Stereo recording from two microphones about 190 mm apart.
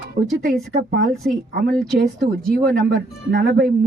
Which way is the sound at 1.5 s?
50° right (ahead or behind).